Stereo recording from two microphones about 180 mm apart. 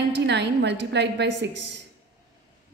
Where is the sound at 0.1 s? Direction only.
70° right (ahead or behind).